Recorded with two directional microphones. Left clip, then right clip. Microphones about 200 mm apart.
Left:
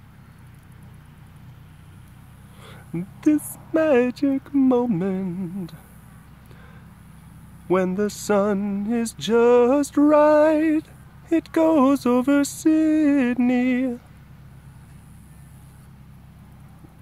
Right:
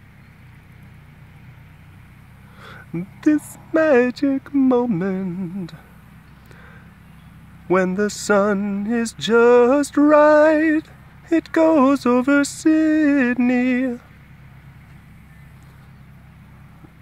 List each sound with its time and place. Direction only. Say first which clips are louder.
2.6 s male singing: right 2 dB; centre (ahead or behind)
7.6 s male singing: right 3 dB; 5° right (ahead or behind)